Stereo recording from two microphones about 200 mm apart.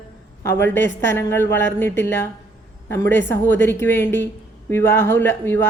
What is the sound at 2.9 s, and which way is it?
Speech, 10° left (ahead or behind).